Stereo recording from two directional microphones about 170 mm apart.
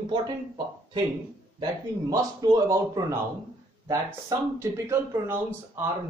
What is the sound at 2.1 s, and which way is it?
Speech, 20° right (ahead or behind).